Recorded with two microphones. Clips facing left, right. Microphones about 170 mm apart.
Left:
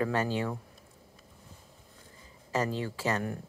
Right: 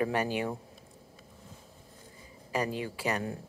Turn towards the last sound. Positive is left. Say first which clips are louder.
# left 1 dB
turn(degrees=-15)  # may be behind; listen again after turning